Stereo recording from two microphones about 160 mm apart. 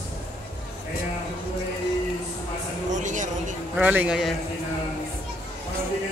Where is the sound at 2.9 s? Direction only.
50° right (ahead or behind).